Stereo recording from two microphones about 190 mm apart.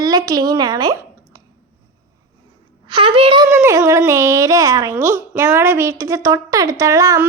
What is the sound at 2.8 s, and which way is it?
A woman's voice, 25° right (ahead or behind).